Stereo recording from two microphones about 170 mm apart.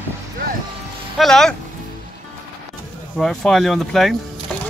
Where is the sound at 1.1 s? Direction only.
Centre (ahead or behind).